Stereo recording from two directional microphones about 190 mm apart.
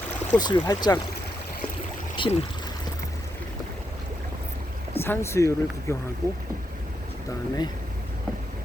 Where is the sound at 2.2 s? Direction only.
25° left (ahead or behind).